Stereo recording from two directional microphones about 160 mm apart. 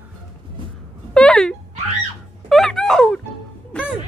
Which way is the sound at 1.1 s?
5° left (ahead or behind).